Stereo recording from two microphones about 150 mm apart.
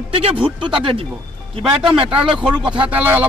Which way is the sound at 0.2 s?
35° right (ahead or behind).